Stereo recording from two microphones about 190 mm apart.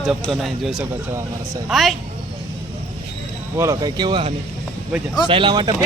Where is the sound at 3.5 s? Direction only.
20° right (ahead or behind).